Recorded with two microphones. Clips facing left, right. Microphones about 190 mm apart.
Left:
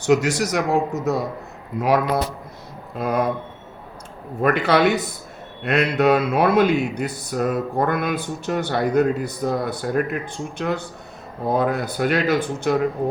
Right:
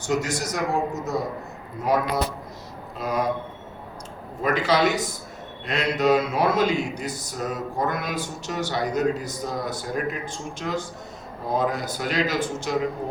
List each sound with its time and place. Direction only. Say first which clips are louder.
0.0 s a man's voice: left 7 dB; 75° left (ahead or behind)
3.0 s speech: left 4 dB; 55° left (ahead or behind)
4.4 s speech: left 4 dB; 60° left (ahead or behind)